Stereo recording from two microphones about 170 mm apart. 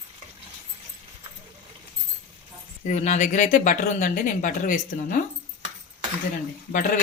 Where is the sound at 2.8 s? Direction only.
45° left (ahead or behind).